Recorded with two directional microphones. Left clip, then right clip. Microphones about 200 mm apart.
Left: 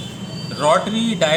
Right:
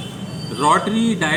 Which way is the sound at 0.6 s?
30° left (ahead or behind).